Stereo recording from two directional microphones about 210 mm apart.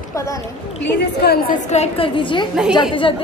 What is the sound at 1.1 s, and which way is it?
A woman's voice, 45° left (ahead or behind).